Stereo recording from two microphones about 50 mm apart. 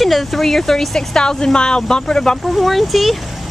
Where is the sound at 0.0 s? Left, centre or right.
Centre.